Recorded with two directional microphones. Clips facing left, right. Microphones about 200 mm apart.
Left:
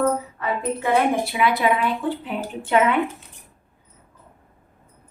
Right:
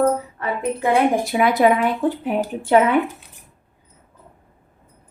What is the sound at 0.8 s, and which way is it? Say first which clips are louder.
A woman's voice: right 3 dB; 45° right (ahead or behind).